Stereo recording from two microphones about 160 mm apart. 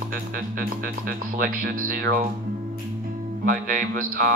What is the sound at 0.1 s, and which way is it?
Speech, 60° right (ahead or behind).